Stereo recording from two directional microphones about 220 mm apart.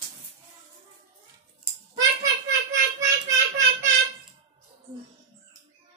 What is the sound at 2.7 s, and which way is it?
Child singing, 15° right (ahead or behind).